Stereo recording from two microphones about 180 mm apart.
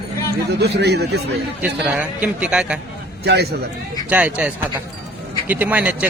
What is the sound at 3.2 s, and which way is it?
Speech, 65° right (ahead or behind).